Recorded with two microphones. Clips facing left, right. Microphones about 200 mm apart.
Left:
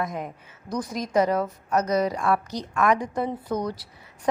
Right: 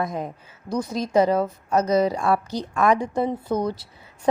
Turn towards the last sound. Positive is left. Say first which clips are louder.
# right 3 dB
turn(degrees=-25)  # may be behind; listen again after turning